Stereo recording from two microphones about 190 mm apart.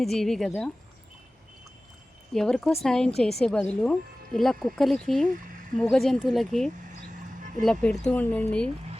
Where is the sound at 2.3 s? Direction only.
5° left (ahead or behind).